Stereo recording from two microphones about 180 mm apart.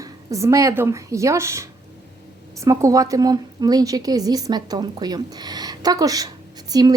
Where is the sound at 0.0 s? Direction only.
15° right (ahead or behind).